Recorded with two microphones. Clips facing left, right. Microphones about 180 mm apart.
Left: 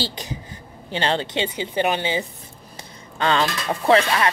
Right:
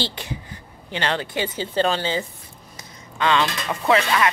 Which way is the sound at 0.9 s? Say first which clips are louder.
Left 2 dB; 30° left (ahead or behind).